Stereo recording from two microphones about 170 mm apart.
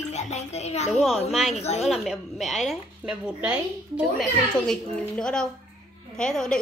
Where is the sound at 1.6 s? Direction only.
40° left (ahead or behind).